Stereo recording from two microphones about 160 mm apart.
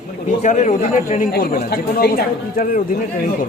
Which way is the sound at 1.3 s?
80° left.